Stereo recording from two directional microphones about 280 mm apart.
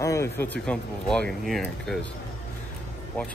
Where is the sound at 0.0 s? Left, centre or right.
Centre.